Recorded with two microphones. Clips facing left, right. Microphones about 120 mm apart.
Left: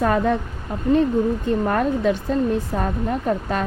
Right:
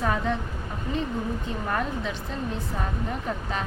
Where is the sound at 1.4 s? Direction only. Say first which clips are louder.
Left 9 dB; 55° left (ahead or behind).